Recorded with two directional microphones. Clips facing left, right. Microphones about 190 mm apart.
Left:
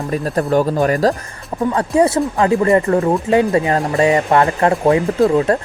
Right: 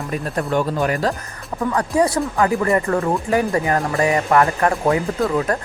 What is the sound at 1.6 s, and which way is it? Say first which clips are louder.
Speech: left 4 dB; 25° left (ahead or behind).